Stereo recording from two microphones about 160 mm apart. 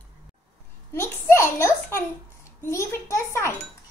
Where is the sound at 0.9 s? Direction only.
15° left (ahead or behind).